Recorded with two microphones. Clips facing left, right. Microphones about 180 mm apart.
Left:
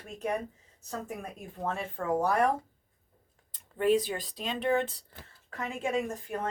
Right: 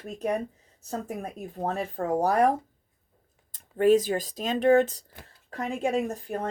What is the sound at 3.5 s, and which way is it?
A woman's voice, 45° right (ahead or behind).